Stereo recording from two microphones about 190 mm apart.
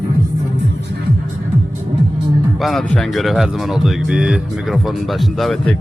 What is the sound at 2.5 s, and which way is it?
Speech, centre (ahead or behind).